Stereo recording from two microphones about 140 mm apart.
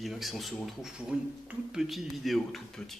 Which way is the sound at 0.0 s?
Centre (ahead or behind).